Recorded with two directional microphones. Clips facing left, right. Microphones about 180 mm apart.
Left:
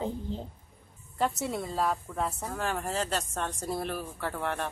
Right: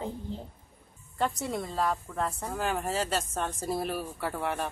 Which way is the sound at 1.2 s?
5° left (ahead or behind).